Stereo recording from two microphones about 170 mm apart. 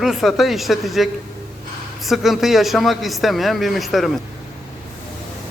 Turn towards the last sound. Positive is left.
turn(degrees=0)  # may be behind; listen again after turning